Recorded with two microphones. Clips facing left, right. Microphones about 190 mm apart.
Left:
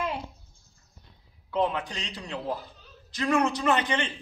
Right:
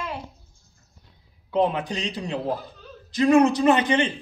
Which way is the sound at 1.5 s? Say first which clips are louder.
Right 5 dB; 20° right (ahead or behind).